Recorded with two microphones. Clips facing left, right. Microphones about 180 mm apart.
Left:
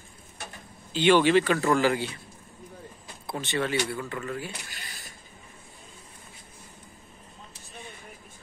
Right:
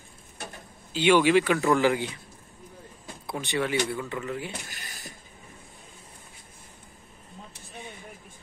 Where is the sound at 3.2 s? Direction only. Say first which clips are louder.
Even; 15° right (ahead or behind).